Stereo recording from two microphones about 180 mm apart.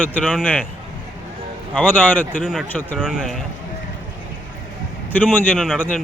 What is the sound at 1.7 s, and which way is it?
Speech, 10° left (ahead or behind).